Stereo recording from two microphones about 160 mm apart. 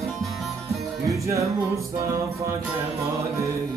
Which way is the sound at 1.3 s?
20° right (ahead or behind).